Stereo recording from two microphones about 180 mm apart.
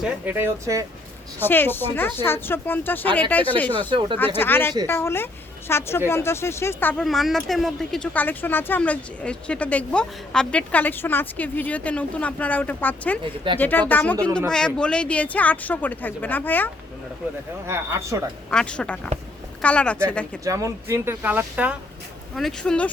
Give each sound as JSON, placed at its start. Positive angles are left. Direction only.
{"t": 0.0, "sound": "speech", "side_deg": -10}
{"t": 1.4, "sound": "speech", "side_deg": 10}
{"t": 3.8, "sound": "speech", "side_deg": -25}
{"t": 4.4, "sound": "a woman's voice", "side_deg": 10}
{"t": 7.0, "sound": "speech", "side_deg": 0}
{"t": 17.7, "sound": "speech", "side_deg": -15}
{"t": 18.5, "sound": "speech", "side_deg": 5}
{"t": 20.4, "sound": "speech", "side_deg": -15}
{"t": 22.4, "sound": "speech", "side_deg": 5}